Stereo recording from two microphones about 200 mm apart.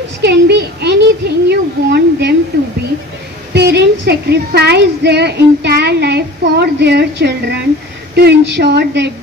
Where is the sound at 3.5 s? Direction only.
55° right (ahead or behind).